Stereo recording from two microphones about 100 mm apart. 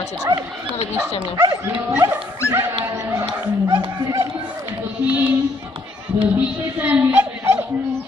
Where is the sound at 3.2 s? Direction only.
55° right (ahead or behind).